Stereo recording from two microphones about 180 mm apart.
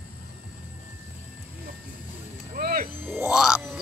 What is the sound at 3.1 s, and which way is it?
Music, 5° right (ahead or behind).